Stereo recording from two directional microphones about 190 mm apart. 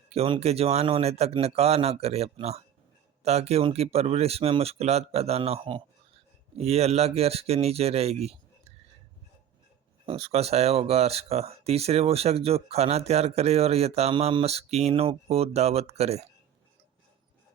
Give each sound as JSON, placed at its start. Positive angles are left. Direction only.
{"t": 0.1, "sound": "speech", "side_deg": -30}
{"t": 10.1, "sound": "speech", "side_deg": -30}